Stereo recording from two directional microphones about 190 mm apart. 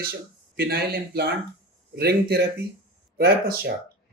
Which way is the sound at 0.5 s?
55° right (ahead or behind).